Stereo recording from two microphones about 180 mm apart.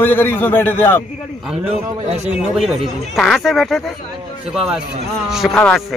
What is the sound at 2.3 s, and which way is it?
Speech, 5° right (ahead or behind).